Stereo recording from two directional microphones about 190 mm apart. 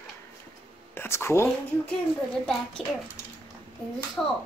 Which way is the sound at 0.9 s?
10° left (ahead or behind).